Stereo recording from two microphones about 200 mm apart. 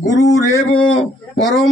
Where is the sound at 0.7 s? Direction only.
Centre (ahead or behind).